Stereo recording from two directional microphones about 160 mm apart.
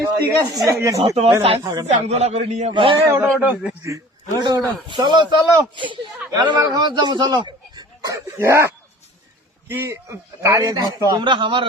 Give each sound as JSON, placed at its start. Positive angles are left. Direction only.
{"t": 0.3, "sound": "a man's voice", "side_deg": -20}
{"t": 0.9, "sound": "a man's voice", "side_deg": -40}
{"t": 2.7, "sound": "speech", "side_deg": -35}
{"t": 3.0, "sound": "a man's voice", "side_deg": -15}
{"t": 3.8, "sound": "a man's voice", "side_deg": -25}
{"t": 8.4, "sound": "a man's voice", "side_deg": -15}